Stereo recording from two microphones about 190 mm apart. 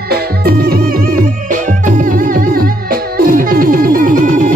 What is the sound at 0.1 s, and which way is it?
Music, 55° right (ahead or behind).